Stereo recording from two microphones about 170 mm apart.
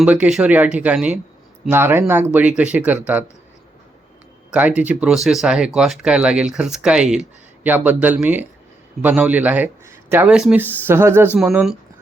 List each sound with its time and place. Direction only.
0.0 s a man's voice: 5° right (ahead or behind)
4.5 s a man's voice: 10° right (ahead or behind)
11.3 s speech: centre (ahead or behind)